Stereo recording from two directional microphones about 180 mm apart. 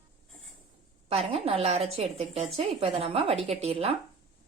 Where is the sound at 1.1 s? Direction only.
35° right (ahead or behind).